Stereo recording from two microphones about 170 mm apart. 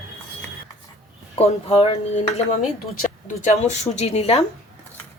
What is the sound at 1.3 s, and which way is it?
Speech, 35° left (ahead or behind).